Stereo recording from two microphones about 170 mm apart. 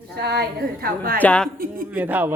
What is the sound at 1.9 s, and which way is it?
Speech, 10° right (ahead or behind).